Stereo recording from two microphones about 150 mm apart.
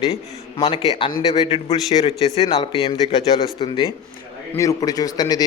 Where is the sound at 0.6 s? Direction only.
35° left (ahead or behind).